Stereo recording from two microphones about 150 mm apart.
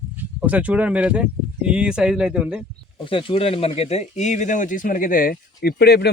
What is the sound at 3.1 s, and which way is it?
Speech, 40° left (ahead or behind).